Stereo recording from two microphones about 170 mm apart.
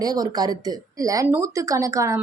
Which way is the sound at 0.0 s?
20° right (ahead or behind).